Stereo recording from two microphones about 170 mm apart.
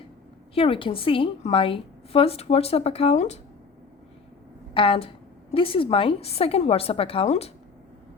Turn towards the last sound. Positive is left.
turn(degrees=35)  # may be behind; listen again after turning